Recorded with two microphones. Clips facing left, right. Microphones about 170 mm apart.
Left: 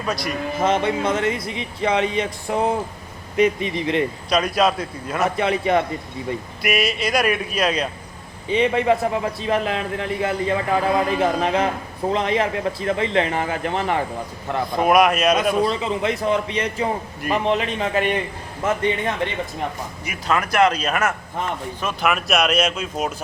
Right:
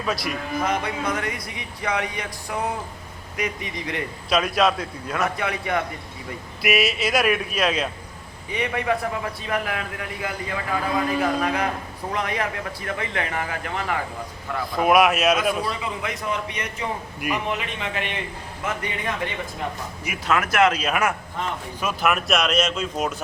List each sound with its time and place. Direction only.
0.0 s speech: 5° right (ahead or behind)
0.6 s speech: 25° left (ahead or behind)
4.3 s speech: centre (ahead or behind)
5.2 s speech: 25° left (ahead or behind)
6.6 s speech: 5° right (ahead or behind)
8.4 s speech: 25° left (ahead or behind)
14.8 s speech: 5° right (ahead or behind)
15.6 s a man's voice: 25° left (ahead or behind); by 18.2 s 40° left (ahead or behind)
20.1 s speech: 5° right (ahead or behind)